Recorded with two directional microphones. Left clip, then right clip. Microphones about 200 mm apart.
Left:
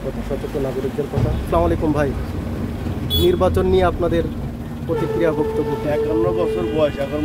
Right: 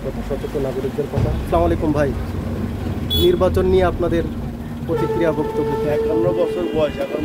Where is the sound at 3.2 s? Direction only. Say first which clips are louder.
Right 1 dB; 5° left (ahead or behind).